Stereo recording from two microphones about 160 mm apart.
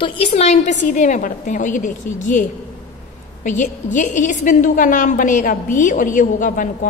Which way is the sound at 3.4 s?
50° left (ahead or behind).